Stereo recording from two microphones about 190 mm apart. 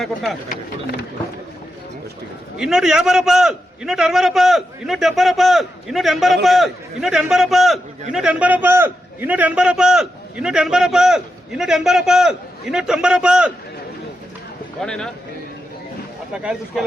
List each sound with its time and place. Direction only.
0.0 s a man's voice: centre (ahead or behind)
2.6 s a man's voice: 5° right (ahead or behind)
14.8 s a man's voice: 5° left (ahead or behind)
16.3 s a man's voice: 5° right (ahead or behind)